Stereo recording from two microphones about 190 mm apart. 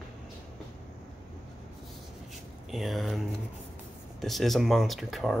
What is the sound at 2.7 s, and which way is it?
Speech, centre (ahead or behind).